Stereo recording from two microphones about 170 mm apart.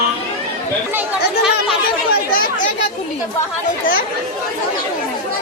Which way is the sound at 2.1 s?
55° left (ahead or behind).